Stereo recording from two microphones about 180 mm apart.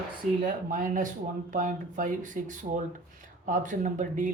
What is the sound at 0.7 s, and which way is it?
Speech, 45° right (ahead or behind).